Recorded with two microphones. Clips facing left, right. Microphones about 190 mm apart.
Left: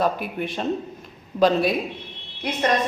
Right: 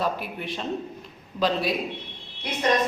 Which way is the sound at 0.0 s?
50° left (ahead or behind).